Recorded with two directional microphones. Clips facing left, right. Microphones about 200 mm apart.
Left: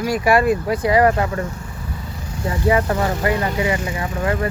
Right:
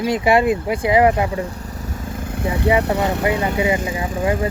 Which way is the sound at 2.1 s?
55° right (ahead or behind).